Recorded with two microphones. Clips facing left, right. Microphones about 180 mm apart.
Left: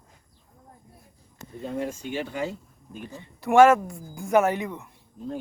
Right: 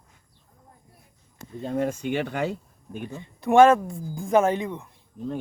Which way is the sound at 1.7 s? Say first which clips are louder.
Right 5 dB; 55° right (ahead or behind).